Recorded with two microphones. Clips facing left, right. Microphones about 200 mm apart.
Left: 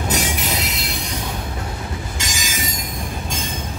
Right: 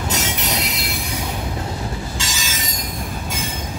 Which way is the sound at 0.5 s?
Centre (ahead or behind).